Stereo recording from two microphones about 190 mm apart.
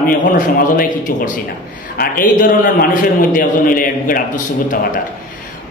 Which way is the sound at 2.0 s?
45° left (ahead or behind).